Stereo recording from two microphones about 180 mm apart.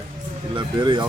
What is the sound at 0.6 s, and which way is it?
Speech, 25° right (ahead or behind).